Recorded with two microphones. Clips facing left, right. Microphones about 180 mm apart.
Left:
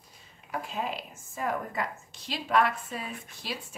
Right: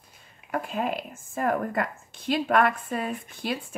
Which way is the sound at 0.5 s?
55° right (ahead or behind).